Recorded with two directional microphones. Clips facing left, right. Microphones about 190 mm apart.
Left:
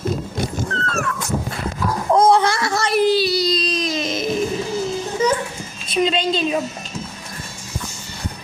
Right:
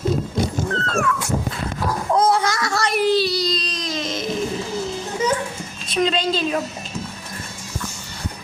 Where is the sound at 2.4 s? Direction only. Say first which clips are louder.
Left 2 dB; 30° left (ahead or behind).